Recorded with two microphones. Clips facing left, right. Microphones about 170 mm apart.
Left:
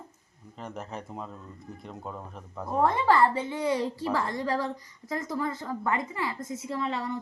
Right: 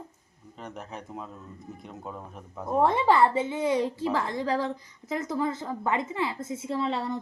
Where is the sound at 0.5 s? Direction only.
Centre (ahead or behind).